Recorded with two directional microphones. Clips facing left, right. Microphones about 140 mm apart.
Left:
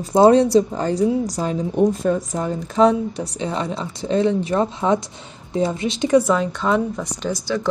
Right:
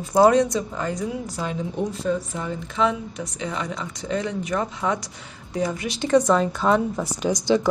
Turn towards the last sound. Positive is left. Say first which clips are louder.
# right 3 dB
turn(degrees=-20)  # may be behind; listen again after turning